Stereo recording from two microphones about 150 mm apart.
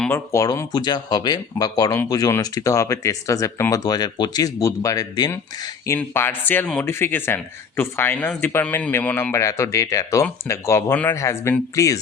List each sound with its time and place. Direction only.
0.1 s speech: 20° left (ahead or behind)